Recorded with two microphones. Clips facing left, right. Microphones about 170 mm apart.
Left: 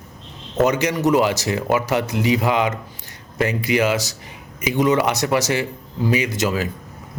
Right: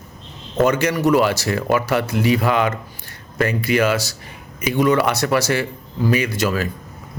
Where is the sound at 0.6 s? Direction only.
15° left (ahead or behind).